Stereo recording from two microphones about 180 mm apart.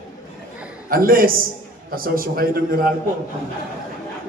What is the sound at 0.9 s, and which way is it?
A man's voice, 50° right (ahead or behind).